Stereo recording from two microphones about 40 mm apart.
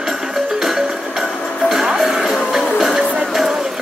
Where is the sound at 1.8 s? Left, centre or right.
Centre.